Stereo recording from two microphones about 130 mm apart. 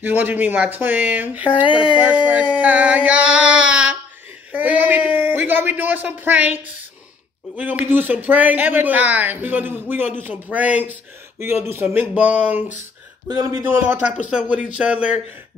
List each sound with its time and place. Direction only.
0.0 s speech: 15° right (ahead or behind)
1.7 s speech: 40° left (ahead or behind)
2.0 s speech: 10° right (ahead or behind)